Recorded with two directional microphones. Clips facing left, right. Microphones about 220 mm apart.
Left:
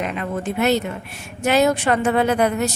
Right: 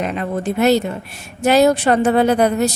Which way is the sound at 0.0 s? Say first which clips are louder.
Right 3 dB; 35° right (ahead or behind).